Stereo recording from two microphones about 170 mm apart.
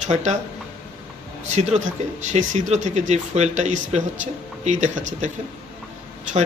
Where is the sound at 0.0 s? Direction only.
45° right (ahead or behind).